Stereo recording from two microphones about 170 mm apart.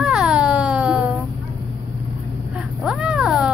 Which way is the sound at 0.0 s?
5° right (ahead or behind).